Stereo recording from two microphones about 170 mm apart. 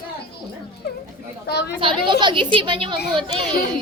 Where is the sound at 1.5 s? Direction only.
70° left (ahead or behind).